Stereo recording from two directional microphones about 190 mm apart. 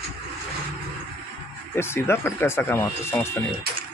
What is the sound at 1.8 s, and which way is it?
Speech, 15° left (ahead or behind).